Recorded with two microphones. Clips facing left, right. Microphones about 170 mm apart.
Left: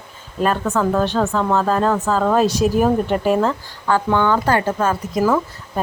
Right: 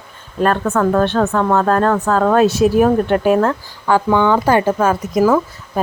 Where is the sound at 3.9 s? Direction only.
15° right (ahead or behind).